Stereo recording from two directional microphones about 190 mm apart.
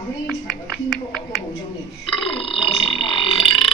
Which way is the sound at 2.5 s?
30° left (ahead or behind).